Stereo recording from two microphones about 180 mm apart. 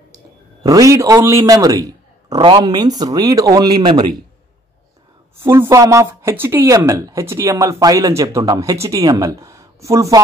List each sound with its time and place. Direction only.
0.7 s a man's voice: 15° right (ahead or behind)
5.4 s speech: 15° right (ahead or behind)